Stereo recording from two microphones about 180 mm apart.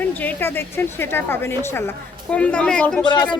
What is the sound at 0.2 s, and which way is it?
Speech, 10° left (ahead or behind).